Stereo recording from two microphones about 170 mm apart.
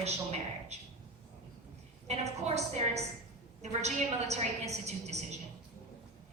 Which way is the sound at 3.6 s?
40° right (ahead or behind).